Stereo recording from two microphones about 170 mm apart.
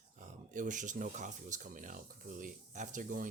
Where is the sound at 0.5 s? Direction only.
50° right (ahead or behind).